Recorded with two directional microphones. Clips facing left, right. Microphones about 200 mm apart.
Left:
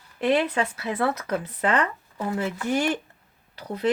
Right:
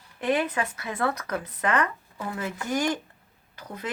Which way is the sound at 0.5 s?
30° left (ahead or behind).